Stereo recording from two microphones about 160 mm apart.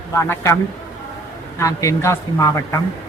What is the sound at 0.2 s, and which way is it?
Speech, 15° left (ahead or behind).